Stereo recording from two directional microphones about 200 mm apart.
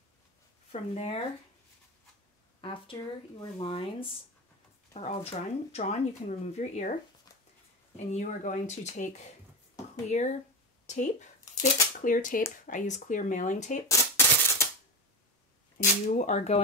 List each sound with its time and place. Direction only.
0.7 s speech: 30° left (ahead or behind)
2.6 s speech: 25° left (ahead or behind)
13.8 s a sound: 15° left (ahead or behind)
15.8 s speech: 40° left (ahead or behind)